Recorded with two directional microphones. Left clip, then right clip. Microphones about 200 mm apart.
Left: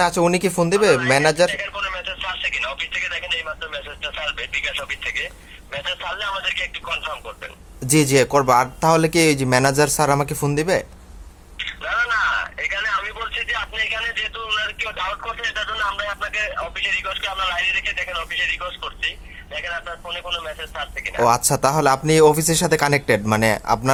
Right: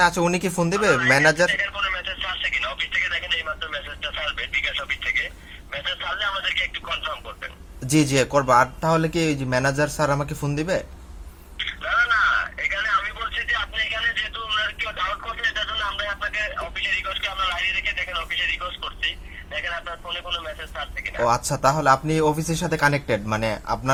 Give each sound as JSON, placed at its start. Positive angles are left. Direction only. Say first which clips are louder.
{"t": 0.0, "sound": "speech", "louder": "left 2 dB", "side_deg": 25}
{"t": 11.5, "sound": "a sound", "louder": "right 1 dB", "side_deg": 30}
{"t": 19.5, "sound": "speech", "louder": "left 1 dB", "side_deg": 20}